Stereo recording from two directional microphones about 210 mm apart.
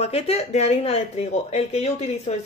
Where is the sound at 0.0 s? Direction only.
30° left (ahead or behind).